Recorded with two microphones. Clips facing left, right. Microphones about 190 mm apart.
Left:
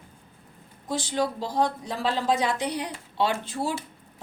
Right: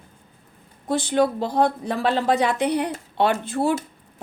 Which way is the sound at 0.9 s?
60° right (ahead or behind).